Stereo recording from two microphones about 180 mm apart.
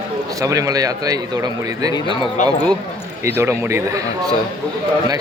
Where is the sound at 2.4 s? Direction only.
40° left (ahead or behind).